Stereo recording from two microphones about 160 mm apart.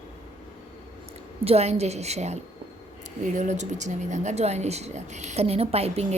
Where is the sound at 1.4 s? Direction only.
40° right (ahead or behind).